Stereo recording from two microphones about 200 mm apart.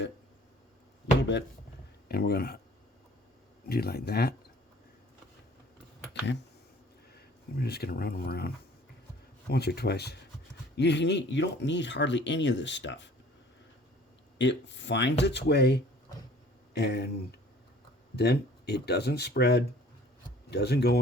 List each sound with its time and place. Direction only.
1.2 s speech: 60° left (ahead or behind)
3.7 s speech: 50° left (ahead or behind)
7.2 s speech: 55° left (ahead or behind)
14.3 s speech: 60° left (ahead or behind)
18.2 s speech: 55° left (ahead or behind)